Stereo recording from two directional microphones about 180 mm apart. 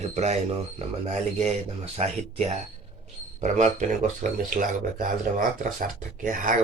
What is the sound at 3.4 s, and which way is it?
Speech, 45° right (ahead or behind).